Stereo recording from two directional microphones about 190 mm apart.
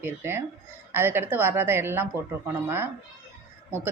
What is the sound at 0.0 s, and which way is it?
Speech, 10° right (ahead or behind).